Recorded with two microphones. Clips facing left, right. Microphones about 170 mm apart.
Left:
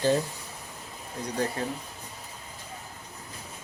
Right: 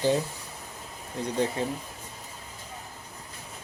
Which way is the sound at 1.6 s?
20° right (ahead or behind).